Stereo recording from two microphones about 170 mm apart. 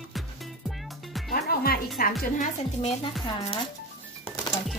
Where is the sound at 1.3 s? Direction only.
65° left (ahead or behind).